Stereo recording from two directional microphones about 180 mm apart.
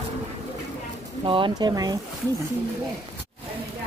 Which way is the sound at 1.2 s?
30° right (ahead or behind).